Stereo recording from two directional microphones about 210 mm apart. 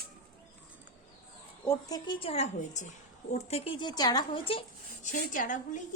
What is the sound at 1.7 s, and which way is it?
Speech, 20° left (ahead or behind).